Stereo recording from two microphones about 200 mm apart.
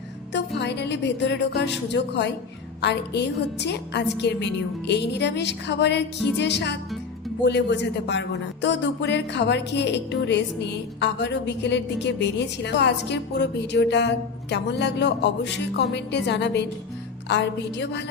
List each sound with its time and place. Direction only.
0.3 s speech: 60° left (ahead or behind)